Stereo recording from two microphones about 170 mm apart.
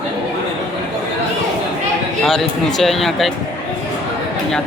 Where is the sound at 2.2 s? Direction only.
Centre (ahead or behind).